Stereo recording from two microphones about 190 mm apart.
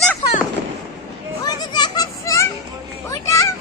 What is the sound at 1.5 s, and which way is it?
Children playing, 20° left (ahead or behind).